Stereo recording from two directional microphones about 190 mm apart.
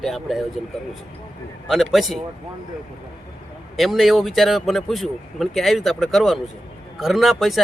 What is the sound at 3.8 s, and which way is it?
Speech, centre (ahead or behind).